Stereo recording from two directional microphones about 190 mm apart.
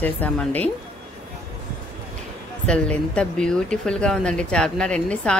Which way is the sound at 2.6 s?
5° left (ahead or behind).